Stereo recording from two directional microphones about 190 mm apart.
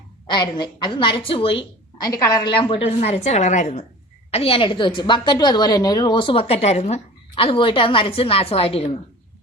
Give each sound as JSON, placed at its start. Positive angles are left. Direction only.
{"t": 0.3, "sound": "a woman's voice", "side_deg": 25}